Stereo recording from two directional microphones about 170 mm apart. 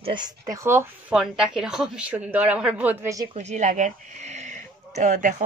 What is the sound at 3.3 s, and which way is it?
Speech, 40° right (ahead or behind).